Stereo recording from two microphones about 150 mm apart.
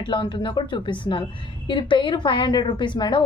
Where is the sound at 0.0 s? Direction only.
35° left (ahead or behind).